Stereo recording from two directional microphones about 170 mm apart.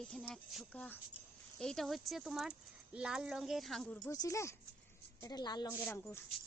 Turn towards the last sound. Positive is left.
turn(degrees=15)  # may be behind; listen again after turning